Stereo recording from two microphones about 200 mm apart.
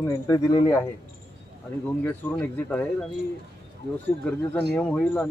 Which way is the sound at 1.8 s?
10° left (ahead or behind).